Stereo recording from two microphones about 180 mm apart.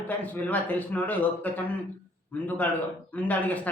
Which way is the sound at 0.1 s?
10° left (ahead or behind).